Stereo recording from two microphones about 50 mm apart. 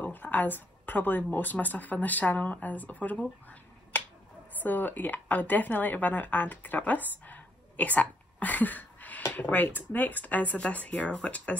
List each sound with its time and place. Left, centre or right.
0.0 s speech: left